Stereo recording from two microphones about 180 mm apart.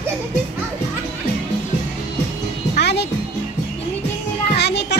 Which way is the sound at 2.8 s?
70° left (ahead or behind).